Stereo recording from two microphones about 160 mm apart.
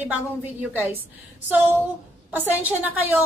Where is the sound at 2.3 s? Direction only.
10° right (ahead or behind).